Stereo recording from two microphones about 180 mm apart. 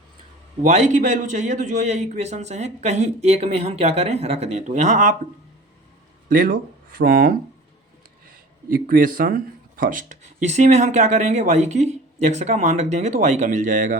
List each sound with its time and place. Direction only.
0.6 s speech: 40° right (ahead or behind)
6.2 s speech: 55° right (ahead or behind)